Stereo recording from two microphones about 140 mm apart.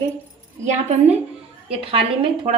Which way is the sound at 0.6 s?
55° right (ahead or behind).